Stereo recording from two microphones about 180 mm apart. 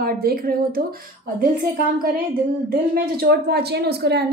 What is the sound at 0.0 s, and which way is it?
Speech, 55° right (ahead or behind).